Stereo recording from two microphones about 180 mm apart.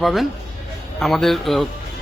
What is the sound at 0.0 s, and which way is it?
A man's voice, centre (ahead or behind).